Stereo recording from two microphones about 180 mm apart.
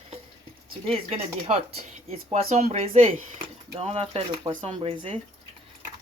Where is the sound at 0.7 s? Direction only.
30° right (ahead or behind).